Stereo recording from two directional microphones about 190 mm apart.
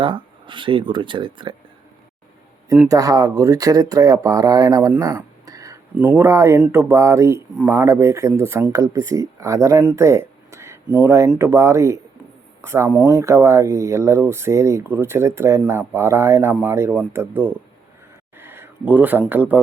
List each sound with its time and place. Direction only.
0.0 s speech: 25° right (ahead or behind)
2.9 s speech: 20° right (ahead or behind)